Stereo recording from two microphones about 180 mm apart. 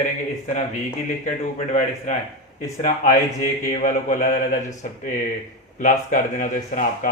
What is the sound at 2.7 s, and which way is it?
Speech, 45° left (ahead or behind).